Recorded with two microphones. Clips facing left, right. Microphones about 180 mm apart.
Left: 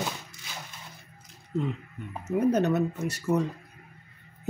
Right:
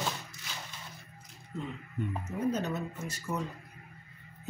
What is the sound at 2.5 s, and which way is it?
Speech, 65° left (ahead or behind).